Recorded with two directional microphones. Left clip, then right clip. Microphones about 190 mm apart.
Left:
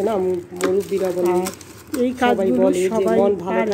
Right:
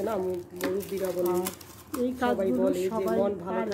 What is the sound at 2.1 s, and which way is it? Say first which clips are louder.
Speech: left 9 dB; 15° left (ahead or behind).